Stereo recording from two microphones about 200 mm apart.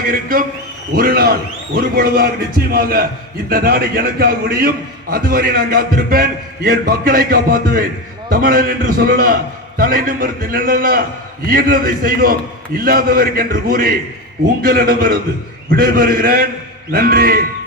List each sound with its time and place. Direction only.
0.1 s a man's voice: 45° right (ahead or behind)